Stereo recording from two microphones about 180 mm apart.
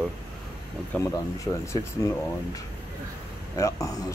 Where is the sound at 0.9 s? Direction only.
15° left (ahead or behind).